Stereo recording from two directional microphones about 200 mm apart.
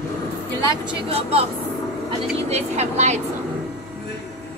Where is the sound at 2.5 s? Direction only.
35° right (ahead or behind).